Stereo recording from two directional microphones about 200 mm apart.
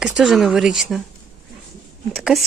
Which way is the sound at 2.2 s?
Centre (ahead or behind).